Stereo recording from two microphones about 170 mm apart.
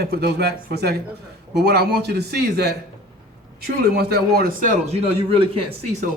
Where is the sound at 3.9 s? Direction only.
65° right (ahead or behind).